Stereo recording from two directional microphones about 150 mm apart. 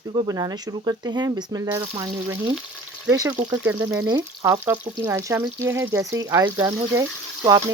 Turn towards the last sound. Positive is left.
turn(degrees=-20)  # may be behind; listen again after turning